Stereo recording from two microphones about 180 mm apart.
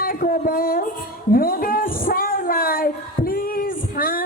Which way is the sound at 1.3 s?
55° left (ahead or behind).